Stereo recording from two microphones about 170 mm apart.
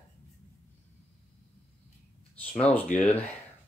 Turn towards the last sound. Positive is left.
turn(degrees=5)  # may be behind; listen again after turning